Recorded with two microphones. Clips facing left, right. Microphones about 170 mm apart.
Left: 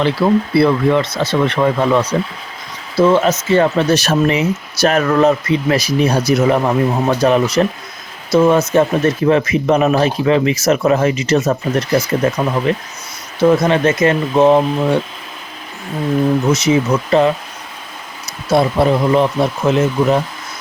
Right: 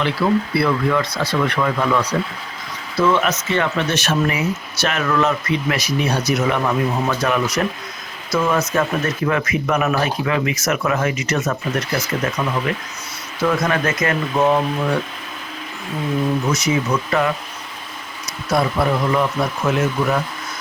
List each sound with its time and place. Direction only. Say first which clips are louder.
0.2 s speech: left 5 dB; 30° left (ahead or behind)
16.5 s speech: left 6 dB; 25° left (ahead or behind)
18.5 s speech: left 5 dB; 25° left (ahead or behind)